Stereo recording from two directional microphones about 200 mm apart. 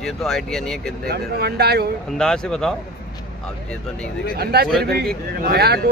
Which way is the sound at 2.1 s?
5° left (ahead or behind).